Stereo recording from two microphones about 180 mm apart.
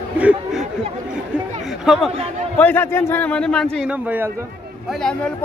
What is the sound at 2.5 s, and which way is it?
A man's voice, 10° left (ahead or behind).